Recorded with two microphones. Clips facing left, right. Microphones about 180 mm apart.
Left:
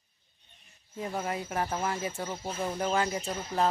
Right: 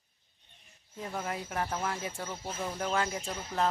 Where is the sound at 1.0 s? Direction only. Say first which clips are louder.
Left 3 dB; 10° left (ahead or behind).